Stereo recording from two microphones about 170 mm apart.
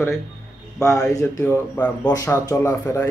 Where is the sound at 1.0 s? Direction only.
5° left (ahead or behind).